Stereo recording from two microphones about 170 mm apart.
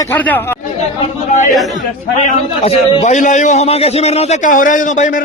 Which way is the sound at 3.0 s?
45° left (ahead or behind).